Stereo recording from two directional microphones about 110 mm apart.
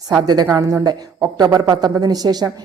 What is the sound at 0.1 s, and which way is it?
A woman's voice, 35° right (ahead or behind).